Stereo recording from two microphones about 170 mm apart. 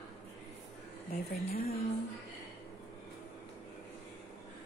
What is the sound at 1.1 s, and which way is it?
Speech, 65° left (ahead or behind).